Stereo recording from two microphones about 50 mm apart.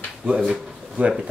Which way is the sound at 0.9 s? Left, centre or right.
Right.